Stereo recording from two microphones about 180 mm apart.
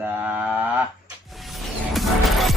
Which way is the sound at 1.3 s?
Centre (ahead or behind).